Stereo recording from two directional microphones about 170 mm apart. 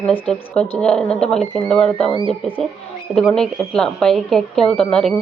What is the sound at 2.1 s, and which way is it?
Music, 30° right (ahead or behind).